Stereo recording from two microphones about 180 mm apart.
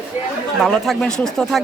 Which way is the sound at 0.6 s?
Centre (ahead or behind).